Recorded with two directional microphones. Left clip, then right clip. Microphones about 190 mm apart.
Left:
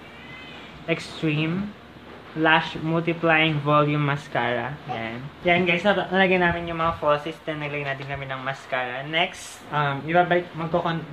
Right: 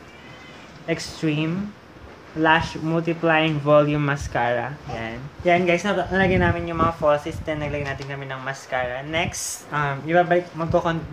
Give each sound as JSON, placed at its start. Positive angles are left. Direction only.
{"t": 0.8, "sound": "speech", "side_deg": -25}